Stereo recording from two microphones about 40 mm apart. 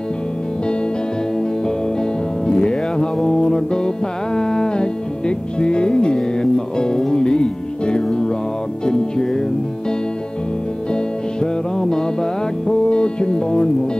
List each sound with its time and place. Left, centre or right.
2.0 s music: centre
11.4 s music: centre